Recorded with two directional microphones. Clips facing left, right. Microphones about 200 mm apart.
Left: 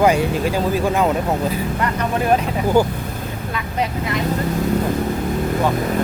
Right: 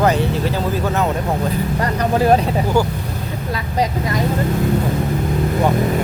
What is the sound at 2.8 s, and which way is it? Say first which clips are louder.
Speech: left 3 dB; 20° left (ahead or behind).